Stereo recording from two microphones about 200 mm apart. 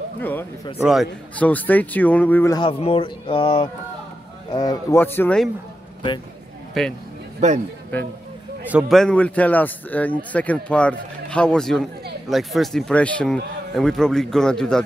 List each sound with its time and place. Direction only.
0.2 s a sound: 10° left (ahead or behind)
0.7 s speech: 5° right (ahead or behind)
1.3 s a man's voice: 5° left (ahead or behind)
2.8 s a man's voice: 25° left (ahead or behind); by 5.5 s 5° left (ahead or behind)
6.8 s speech: centre (ahead or behind)
7.3 s a man's voice: 35° right (ahead or behind)
8.6 s a man's voice: centre (ahead or behind)